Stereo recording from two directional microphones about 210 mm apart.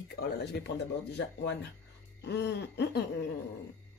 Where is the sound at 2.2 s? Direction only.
55° left (ahead or behind).